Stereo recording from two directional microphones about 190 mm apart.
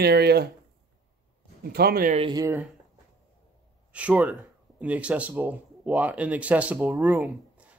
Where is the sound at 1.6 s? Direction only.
55° right (ahead or behind).